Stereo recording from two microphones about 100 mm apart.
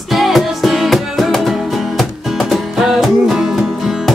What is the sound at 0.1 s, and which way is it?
Music, centre (ahead or behind).